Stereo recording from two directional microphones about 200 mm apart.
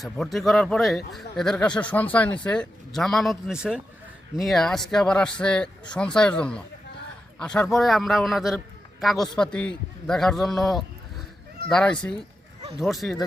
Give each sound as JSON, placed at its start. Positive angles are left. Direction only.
{"t": 0.0, "sound": "speech", "side_deg": 0}